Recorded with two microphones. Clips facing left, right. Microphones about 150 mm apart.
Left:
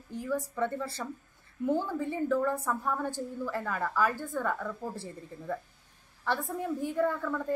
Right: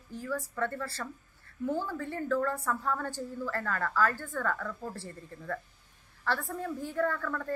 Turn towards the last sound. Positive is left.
turn(degrees=15)  # may be behind; listen again after turning